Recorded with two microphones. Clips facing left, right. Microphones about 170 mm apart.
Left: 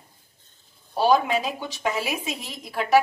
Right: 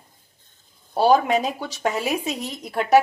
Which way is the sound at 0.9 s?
40° right (ahead or behind).